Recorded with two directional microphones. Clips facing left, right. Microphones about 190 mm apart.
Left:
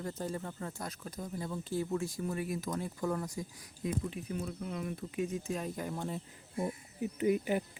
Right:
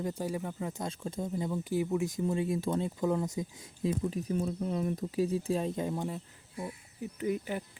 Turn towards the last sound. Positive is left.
turn(degrees=15)  # may be behind; listen again after turning